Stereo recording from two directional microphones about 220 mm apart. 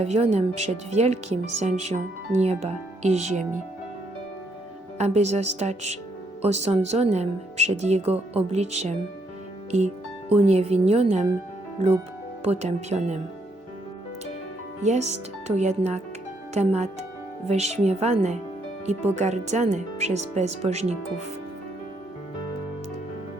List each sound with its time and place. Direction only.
0.0 s speech: 30° right (ahead or behind)
4.9 s speech: 30° right (ahead or behind)
12.4 s speech: 30° right (ahead or behind)
14.8 s speech: 30° right (ahead or behind)